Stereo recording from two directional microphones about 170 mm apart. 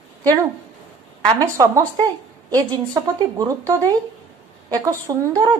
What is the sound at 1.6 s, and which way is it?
A woman's voice, 20° right (ahead or behind).